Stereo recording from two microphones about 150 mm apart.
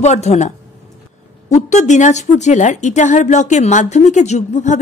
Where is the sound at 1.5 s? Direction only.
50° left (ahead or behind).